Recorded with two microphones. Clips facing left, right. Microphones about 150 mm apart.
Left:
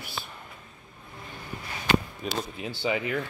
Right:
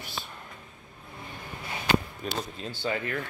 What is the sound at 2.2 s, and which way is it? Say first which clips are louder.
Speech: left 2 dB; 5° left (ahead or behind).